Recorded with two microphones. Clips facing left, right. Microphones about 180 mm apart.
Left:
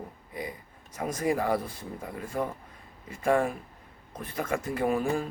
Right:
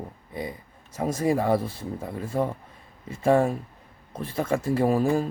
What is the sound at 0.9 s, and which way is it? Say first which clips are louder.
A man's voice: right 4 dB; 25° right (ahead or behind).